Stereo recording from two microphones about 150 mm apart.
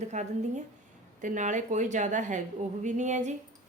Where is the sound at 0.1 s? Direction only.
50° right (ahead or behind).